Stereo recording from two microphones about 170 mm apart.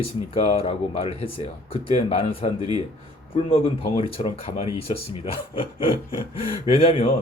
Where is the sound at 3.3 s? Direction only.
35° left (ahead or behind).